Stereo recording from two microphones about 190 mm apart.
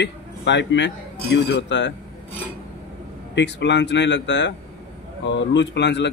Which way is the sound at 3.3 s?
65° left (ahead or behind).